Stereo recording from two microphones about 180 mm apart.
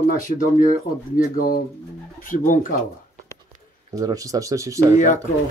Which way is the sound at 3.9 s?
20° right (ahead or behind).